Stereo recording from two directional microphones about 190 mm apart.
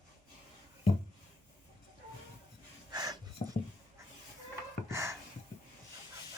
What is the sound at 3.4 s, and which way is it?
Dog, 35° left (ahead or behind).